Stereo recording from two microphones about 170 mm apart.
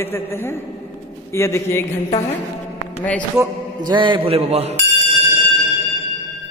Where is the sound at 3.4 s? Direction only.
25° right (ahead or behind).